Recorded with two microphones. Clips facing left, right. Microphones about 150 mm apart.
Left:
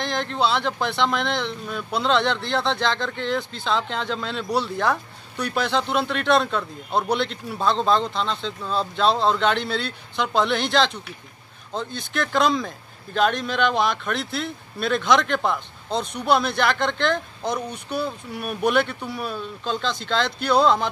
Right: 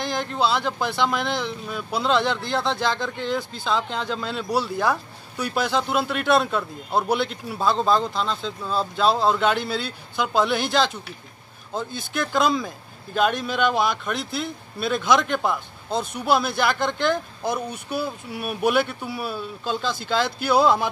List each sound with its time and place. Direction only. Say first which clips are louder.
0.0 s speech: even; 5° right (ahead or behind)